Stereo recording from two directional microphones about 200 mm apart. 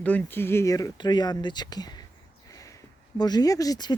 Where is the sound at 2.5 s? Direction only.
15° left (ahead or behind).